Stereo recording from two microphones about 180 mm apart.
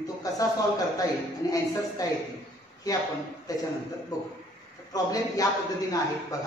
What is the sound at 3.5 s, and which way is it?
A man's voice, 20° left (ahead or behind).